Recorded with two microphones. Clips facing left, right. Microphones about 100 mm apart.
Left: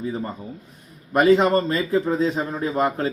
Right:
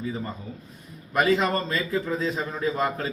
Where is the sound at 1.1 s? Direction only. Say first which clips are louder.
Left 6 dB; 35° left (ahead or behind).